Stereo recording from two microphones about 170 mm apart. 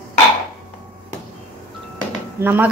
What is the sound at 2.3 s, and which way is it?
Speech, 10° right (ahead or behind).